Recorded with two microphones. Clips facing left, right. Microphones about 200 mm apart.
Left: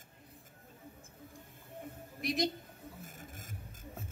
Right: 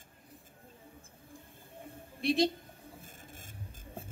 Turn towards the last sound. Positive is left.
turn(degrees=-30)  # may be behind; listen again after turning